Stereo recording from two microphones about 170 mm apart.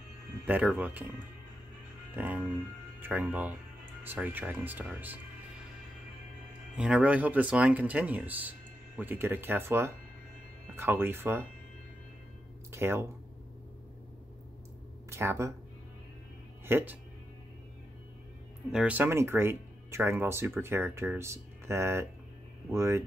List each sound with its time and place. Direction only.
0.5 s speech: 10° right (ahead or behind)
2.1 s speech: 10° right (ahead or behind)
6.8 s speech: 5° right (ahead or behind)
12.7 s speech: 15° right (ahead or behind)
15.0 s speech: 15° right (ahead or behind)
16.6 s speech: 10° right (ahead or behind)
18.7 s speech: 5° right (ahead or behind)